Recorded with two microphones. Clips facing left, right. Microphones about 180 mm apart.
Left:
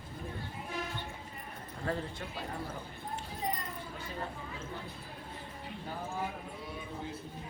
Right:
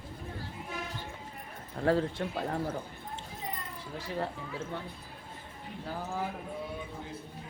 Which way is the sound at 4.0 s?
80° right.